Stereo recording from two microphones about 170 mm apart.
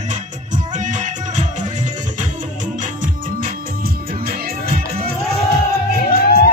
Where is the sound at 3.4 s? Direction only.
55° right (ahead or behind).